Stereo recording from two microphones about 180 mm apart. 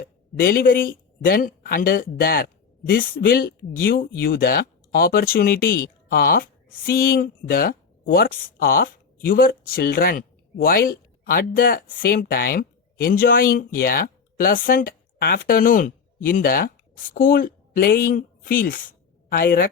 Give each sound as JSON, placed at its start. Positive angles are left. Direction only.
{"t": 0.0, "sound": "a woman's voice", "side_deg": 55}